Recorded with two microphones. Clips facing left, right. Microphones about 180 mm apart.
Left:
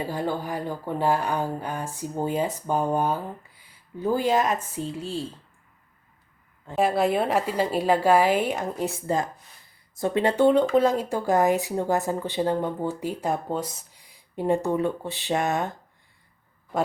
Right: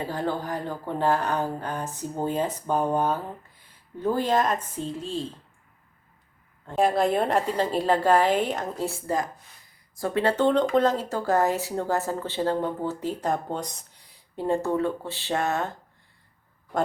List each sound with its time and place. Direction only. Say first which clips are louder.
0.0 s speech: left 1 dB; 10° left (ahead or behind)
6.7 s speech: even; 5° left (ahead or behind)